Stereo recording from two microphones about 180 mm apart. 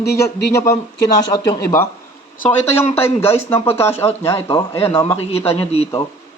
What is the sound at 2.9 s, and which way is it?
Speech, 15° left (ahead or behind).